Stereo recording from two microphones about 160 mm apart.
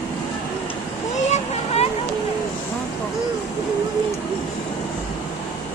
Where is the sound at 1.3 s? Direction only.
40° left (ahead or behind).